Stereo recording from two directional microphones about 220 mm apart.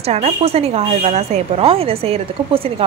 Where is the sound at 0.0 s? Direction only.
30° right (ahead or behind).